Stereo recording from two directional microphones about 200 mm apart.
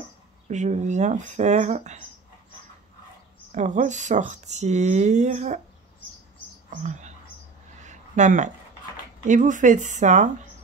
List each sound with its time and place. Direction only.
0.5 s speech: 35° right (ahead or behind)
3.5 s speech: 35° right (ahead or behind)
6.8 s speech: 35° right (ahead or behind)
7.8 s a sound: 35° right (ahead or behind)
9.2 s speech: 40° right (ahead or behind)